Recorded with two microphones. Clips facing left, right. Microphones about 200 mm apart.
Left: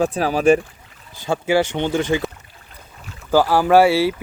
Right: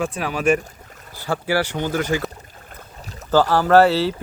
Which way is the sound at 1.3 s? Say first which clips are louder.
Left 4 dB; 20° left (ahead or behind).